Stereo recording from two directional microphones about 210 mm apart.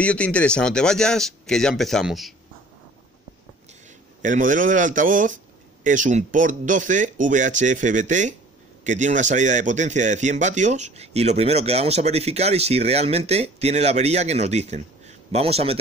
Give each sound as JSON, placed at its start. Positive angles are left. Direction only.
{"t": 0.0, "sound": "speech", "side_deg": 5}
{"t": 4.2, "sound": "a man's voice", "side_deg": -40}